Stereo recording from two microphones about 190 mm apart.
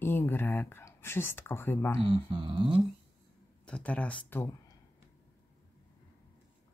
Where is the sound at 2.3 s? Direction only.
25° right (ahead or behind).